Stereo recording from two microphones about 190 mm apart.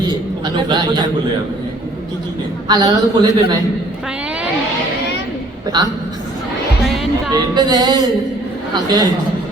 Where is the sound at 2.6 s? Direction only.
20° right (ahead or behind).